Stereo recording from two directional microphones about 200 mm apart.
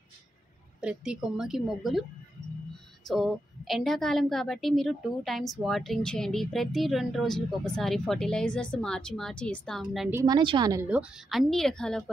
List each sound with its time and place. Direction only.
0.7 s a woman's voice: 5° right (ahead or behind)
3.1 s a woman's voice: centre (ahead or behind)
10.2 s a woman's voice: 20° right (ahead or behind)
10.9 s a woman's voice: 5° right (ahead or behind)